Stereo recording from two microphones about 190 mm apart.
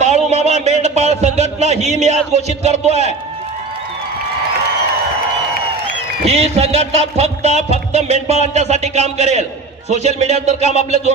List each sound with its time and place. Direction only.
0.0 s a man's voice: 35° right (ahead or behind)
6.2 s music: 35° right (ahead or behind)